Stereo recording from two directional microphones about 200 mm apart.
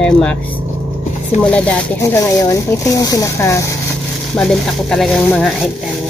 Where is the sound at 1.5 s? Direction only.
5° left (ahead or behind).